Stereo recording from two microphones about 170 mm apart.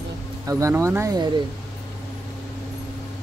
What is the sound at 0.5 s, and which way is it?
Speech, 20° right (ahead or behind).